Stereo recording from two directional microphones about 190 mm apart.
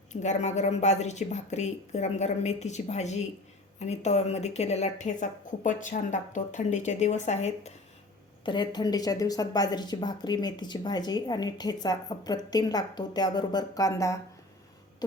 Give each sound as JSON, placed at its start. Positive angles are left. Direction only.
{"t": 0.1, "sound": "a woman's voice", "side_deg": 40}
{"t": 8.4, "sound": "speech", "side_deg": 25}